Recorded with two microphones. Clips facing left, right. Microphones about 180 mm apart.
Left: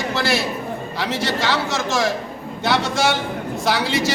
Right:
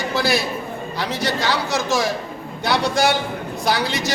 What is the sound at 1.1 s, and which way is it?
Speech, 25° left (ahead or behind).